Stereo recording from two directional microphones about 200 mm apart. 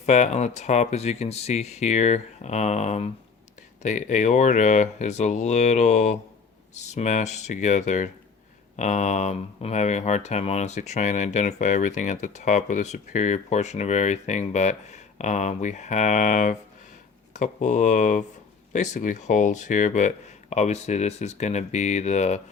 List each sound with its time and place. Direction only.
0.0 s speech: 35° left (ahead or behind)